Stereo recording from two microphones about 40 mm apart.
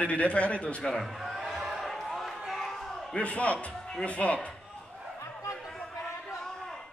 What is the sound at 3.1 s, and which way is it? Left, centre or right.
A man's voice, left.